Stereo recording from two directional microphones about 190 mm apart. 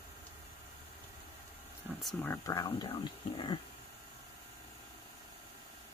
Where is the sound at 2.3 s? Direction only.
20° left (ahead or behind).